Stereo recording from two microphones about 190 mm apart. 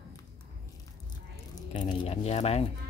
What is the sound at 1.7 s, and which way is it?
Speech, 25° left (ahead or behind).